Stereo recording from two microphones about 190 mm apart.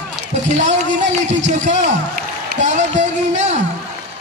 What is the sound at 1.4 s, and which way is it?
A man's voice, 40° right (ahead or behind).